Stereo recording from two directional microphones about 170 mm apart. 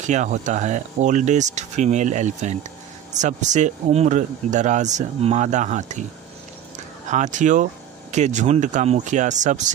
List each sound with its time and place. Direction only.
0.0 s speech: 45° right (ahead or behind)
7.1 s speech: 45° right (ahead or behind)